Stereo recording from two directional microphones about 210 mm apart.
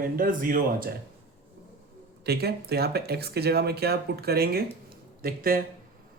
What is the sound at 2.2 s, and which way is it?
Speech, 50° right (ahead or behind).